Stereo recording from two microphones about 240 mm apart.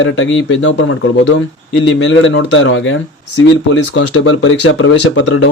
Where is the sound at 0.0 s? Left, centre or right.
Left.